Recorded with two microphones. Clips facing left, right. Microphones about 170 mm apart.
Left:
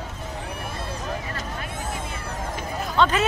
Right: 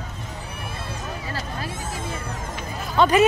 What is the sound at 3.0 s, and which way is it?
Speech, 10° right (ahead or behind).